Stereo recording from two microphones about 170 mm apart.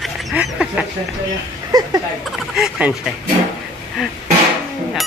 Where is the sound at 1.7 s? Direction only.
20° right (ahead or behind).